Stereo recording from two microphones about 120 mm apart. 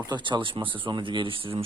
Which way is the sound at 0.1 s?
40° right (ahead or behind).